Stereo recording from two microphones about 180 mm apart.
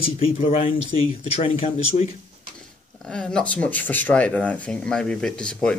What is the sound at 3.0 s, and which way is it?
Speech, 5° left (ahead or behind).